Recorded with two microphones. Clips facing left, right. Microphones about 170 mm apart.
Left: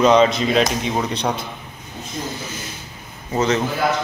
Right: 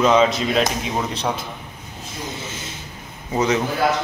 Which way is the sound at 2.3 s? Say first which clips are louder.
Left 1 dB; 25° right (ahead or behind).